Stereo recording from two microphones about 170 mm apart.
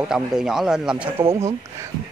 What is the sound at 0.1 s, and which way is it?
Speech, 5° right (ahead or behind).